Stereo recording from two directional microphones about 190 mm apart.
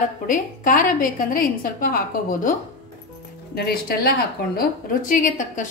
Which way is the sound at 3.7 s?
55° left (ahead or behind).